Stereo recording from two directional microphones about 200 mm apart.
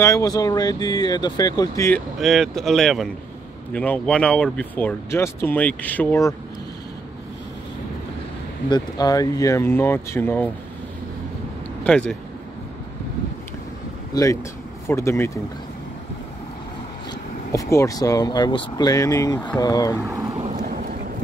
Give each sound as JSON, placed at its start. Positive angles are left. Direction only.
{"t": 0.0, "sound": "speech", "side_deg": 15}
{"t": 2.1, "sound": "speech", "side_deg": 0}
{"t": 8.6, "sound": "speech", "side_deg": 20}
{"t": 11.8, "sound": "speech", "side_deg": 5}
{"t": 14.1, "sound": "speech", "side_deg": 15}
{"t": 17.5, "sound": "speech", "side_deg": 15}
{"t": 20.1, "sound": "boat", "side_deg": -15}
{"t": 20.3, "sound": "a sound", "side_deg": -35}